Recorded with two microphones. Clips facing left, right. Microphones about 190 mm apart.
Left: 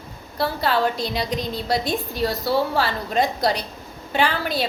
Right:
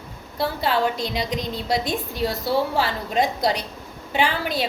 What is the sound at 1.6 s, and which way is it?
A woman's voice, 20° right (ahead or behind).